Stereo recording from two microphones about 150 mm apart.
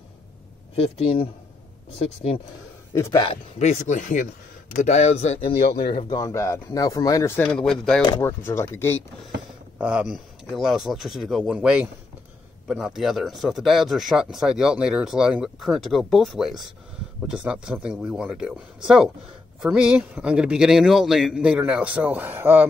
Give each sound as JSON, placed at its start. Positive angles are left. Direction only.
{"t": 0.7, "sound": "speech", "side_deg": 40}
{"t": 2.9, "sound": "a man's voice", "side_deg": 20}
{"t": 3.5, "sound": "speech", "side_deg": 50}
{"t": 7.5, "sound": "speech", "side_deg": 5}
{"t": 8.1, "sound": "speech", "side_deg": 15}
{"t": 9.8, "sound": "a man's voice", "side_deg": -10}